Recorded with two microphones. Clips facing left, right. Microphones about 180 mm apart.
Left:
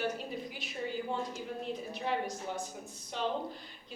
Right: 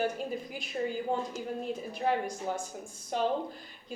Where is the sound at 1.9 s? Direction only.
45° right (ahead or behind).